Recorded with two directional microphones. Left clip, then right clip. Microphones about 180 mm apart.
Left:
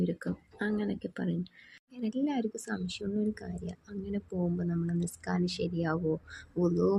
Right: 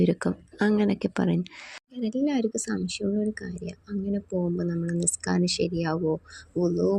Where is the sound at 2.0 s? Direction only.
20° right (ahead or behind).